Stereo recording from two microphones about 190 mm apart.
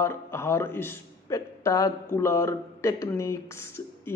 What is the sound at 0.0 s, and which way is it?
Speech, 15° left (ahead or behind).